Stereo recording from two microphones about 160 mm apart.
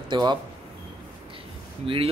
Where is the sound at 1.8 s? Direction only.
35° right (ahead or behind).